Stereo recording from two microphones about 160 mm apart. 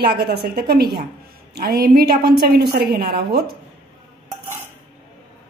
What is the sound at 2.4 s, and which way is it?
A woman's voice, 85° right.